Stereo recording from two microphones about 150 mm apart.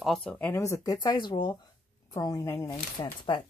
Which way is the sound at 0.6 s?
25° left (ahead or behind).